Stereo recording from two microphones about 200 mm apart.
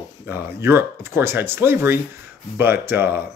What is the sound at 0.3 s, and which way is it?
Speech, 10° right (ahead or behind).